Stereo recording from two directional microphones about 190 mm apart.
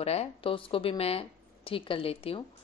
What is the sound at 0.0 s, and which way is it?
A woman's voice, 35° left (ahead or behind).